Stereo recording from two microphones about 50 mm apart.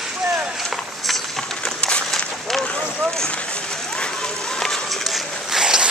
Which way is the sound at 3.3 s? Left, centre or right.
Centre.